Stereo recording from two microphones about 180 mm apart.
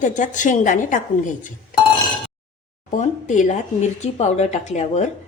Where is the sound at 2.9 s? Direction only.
45° left (ahead or behind).